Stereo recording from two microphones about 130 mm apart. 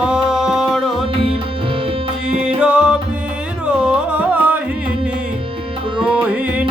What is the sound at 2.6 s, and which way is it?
Music, 10° right (ahead or behind).